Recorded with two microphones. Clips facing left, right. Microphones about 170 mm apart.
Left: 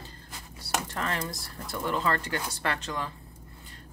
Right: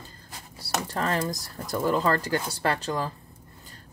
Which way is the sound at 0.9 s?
35° right (ahead or behind).